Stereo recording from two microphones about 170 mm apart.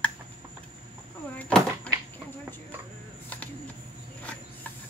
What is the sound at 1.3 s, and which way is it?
Door, 5° left (ahead or behind).